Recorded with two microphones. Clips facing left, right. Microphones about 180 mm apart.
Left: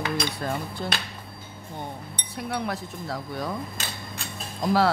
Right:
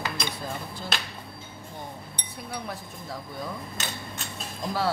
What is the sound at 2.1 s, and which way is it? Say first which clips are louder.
Speech: left 9 dB; 75° left (ahead or behind).